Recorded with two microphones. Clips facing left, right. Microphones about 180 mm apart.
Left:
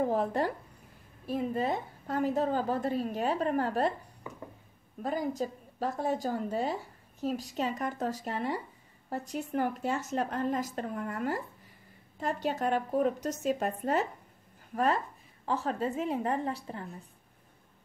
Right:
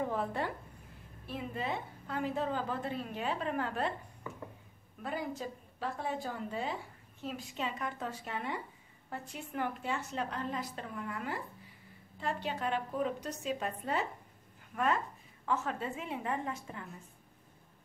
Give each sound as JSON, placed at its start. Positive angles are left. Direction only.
{"t": 0.0, "sound": "a woman's voice", "side_deg": 40}
{"t": 4.2, "sound": "a sound", "side_deg": 15}
{"t": 5.0, "sound": "a woman's voice", "side_deg": 40}
{"t": 15.4, "sound": "a woman's voice", "side_deg": 35}